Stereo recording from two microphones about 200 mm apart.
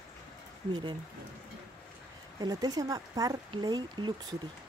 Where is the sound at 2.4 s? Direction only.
20° right (ahead or behind).